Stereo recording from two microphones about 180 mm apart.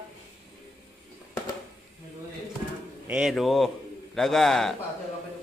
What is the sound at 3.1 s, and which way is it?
A man's voice, 5° right (ahead or behind).